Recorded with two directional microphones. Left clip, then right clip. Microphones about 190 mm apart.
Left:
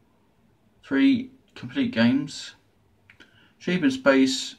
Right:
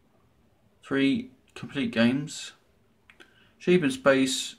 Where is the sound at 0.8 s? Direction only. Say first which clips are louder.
Left 4 dB; 35° right (ahead or behind).